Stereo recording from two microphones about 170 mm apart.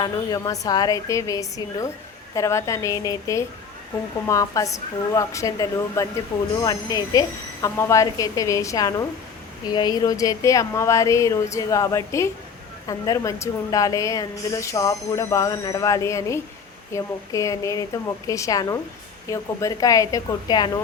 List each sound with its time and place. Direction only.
0.0 s a woman's voice: 25° left (ahead or behind)